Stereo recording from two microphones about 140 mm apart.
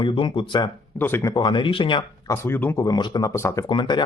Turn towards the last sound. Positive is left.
turn(degrees=35)  # may be behind; listen again after turning